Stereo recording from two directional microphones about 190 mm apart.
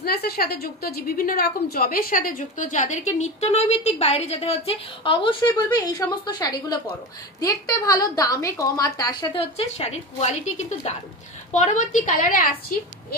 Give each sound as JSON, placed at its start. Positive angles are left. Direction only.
{"t": 0.0, "sound": "a woman's voice", "side_deg": 55}